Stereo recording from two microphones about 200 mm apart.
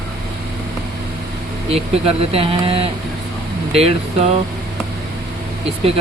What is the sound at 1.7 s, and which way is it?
Speech, 30° right (ahead or behind).